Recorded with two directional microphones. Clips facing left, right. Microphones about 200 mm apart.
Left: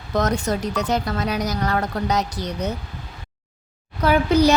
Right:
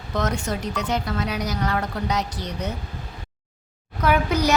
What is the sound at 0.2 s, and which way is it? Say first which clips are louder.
A woman's voice: left 4 dB; 40° left (ahead or behind).